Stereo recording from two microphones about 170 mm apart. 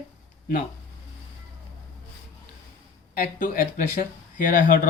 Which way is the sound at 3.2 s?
55° left (ahead or behind).